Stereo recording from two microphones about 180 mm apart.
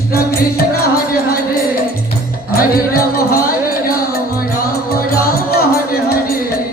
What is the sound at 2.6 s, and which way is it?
Music, 55° left (ahead or behind).